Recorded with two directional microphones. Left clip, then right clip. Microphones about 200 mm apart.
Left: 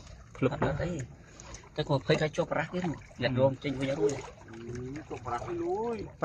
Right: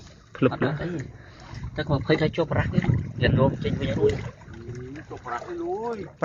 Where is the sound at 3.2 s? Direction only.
30° right (ahead or behind).